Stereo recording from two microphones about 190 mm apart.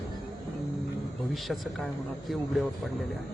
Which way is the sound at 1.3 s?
Centre (ahead or behind).